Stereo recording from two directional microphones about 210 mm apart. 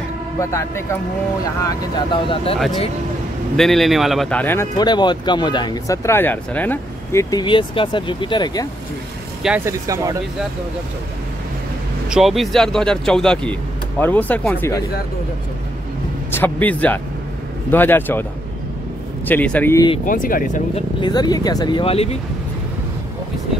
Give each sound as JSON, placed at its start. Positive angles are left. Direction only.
{"t": 0.4, "sound": "speech", "side_deg": 15}
{"t": 3.5, "sound": "speech", "side_deg": 0}
{"t": 9.4, "sound": "speech", "side_deg": -5}
{"t": 9.8, "sound": "speech", "side_deg": -15}
{"t": 12.1, "sound": "speech", "side_deg": 0}
{"t": 16.3, "sound": "speech", "side_deg": 10}
{"t": 19.2, "sound": "speech", "side_deg": 5}
{"t": 20.1, "sound": "speech", "side_deg": 40}
{"t": 21.0, "sound": "speech", "side_deg": 20}